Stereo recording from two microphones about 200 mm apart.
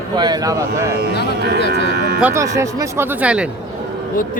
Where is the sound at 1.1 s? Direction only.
55° left (ahead or behind).